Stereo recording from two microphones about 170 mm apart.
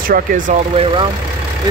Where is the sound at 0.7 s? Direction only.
30° right (ahead or behind).